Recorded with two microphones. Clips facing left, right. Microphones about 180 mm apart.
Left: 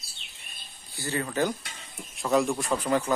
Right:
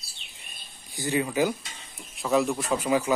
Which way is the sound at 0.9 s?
15° right (ahead or behind).